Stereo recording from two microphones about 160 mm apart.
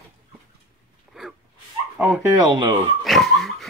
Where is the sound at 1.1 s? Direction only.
Centre (ahead or behind).